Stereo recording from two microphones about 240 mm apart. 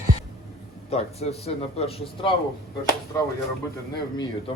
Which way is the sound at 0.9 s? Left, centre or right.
Left.